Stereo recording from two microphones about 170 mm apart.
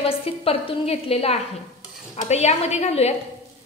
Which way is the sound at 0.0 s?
35° left (ahead or behind).